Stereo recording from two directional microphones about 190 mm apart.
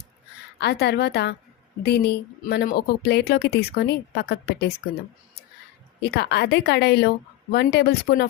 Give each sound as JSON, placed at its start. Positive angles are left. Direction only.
{"t": 0.6, "sound": "speech", "side_deg": 60}
{"t": 2.4, "sound": "speech", "side_deg": 50}
{"t": 6.0, "sound": "speech", "side_deg": 60}